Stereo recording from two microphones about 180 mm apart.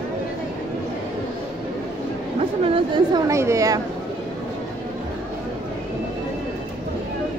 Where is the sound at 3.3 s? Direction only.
15° right (ahead or behind).